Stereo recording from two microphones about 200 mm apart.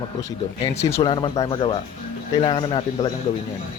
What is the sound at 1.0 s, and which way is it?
A man's voice, 25° left (ahead or behind).